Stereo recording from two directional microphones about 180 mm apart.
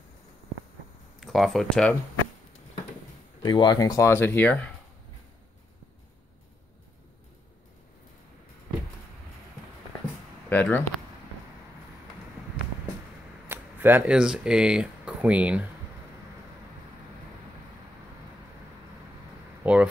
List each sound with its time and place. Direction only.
1.2 s speech: centre (ahead or behind)
3.4 s speech: 25° left (ahead or behind)
10.5 s speech: 10° left (ahead or behind)
13.5 s speech: 10° right (ahead or behind)
19.6 s a sound: 5° right (ahead or behind)